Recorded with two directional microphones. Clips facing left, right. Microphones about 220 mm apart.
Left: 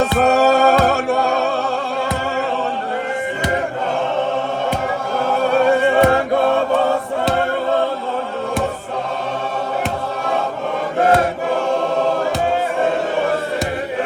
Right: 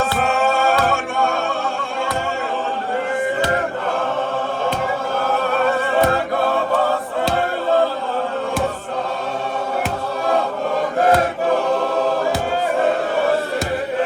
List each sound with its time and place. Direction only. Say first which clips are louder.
0.0 s music: left 5 dB; 40° left (ahead or behind)